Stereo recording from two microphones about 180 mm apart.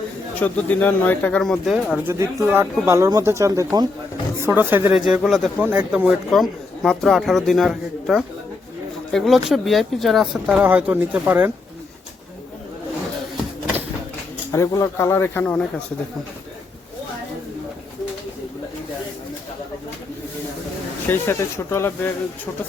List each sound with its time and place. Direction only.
0.3 s speech: 10° left (ahead or behind)
2.0 s a man's voice: 15° right (ahead or behind)
14.5 s speech: 15° left (ahead or behind)
21.1 s speech: 15° left (ahead or behind)